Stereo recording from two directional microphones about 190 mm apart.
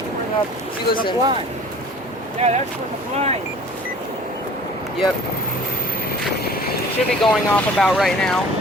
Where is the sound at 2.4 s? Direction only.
35° right (ahead or behind).